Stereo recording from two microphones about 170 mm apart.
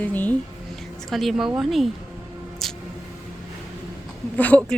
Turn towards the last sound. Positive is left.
turn(degrees=10)  # may be behind; listen again after turning